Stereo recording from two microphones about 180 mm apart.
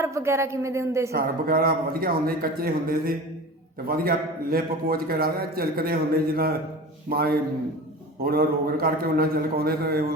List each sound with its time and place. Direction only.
0.0 s a woman's voice: 15° right (ahead or behind)
1.1 s a man's voice: 55° right (ahead or behind)